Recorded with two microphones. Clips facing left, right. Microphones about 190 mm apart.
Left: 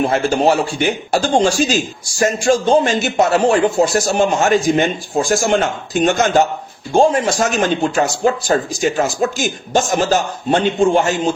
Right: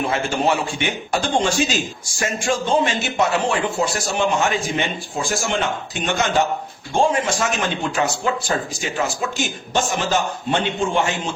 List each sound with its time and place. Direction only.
0.1 s speech: 40° left (ahead or behind)